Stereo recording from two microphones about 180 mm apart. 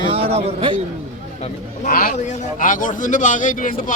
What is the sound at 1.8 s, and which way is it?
A man's voice, 50° left (ahead or behind).